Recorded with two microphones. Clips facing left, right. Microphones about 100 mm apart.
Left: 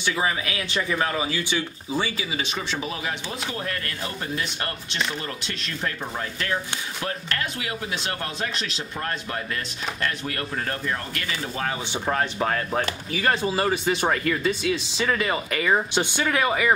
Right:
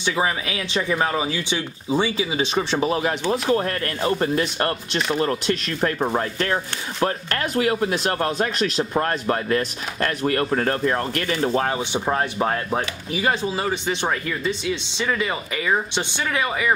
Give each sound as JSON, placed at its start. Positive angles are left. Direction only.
{"t": 0.0, "sound": "speech", "side_deg": -25}
{"t": 11.9, "sound": "speech", "side_deg": -20}
{"t": 13.2, "sound": "speech", "side_deg": 0}